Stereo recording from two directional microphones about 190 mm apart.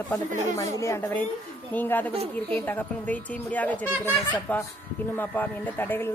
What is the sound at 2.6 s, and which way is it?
Speech, 10° left (ahead or behind).